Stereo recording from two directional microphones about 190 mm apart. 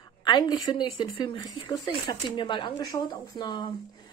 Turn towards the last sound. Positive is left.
turn(degrees=25)  # may be behind; listen again after turning